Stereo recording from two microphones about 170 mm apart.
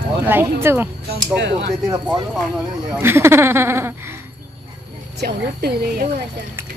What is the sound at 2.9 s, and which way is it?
Speech, 15° right (ahead or behind).